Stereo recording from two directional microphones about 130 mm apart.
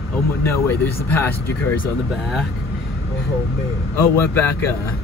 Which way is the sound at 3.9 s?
20° left (ahead or behind).